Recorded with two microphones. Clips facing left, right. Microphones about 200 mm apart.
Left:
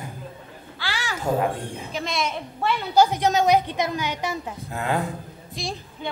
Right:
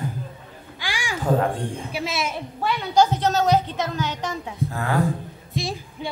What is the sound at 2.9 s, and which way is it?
Speech, 15° left (ahead or behind).